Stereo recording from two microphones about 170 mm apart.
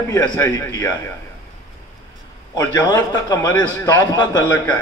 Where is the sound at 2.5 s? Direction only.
20° left (ahead or behind).